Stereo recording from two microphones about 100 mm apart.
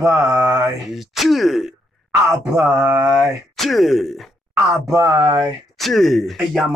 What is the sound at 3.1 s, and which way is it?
Speech, centre (ahead or behind).